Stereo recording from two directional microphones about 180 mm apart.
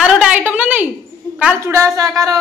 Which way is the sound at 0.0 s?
5° right (ahead or behind).